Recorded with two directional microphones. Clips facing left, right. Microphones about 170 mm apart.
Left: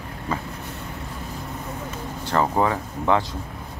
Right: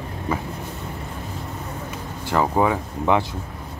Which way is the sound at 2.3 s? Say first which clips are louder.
Right 2 dB; 10° right (ahead or behind).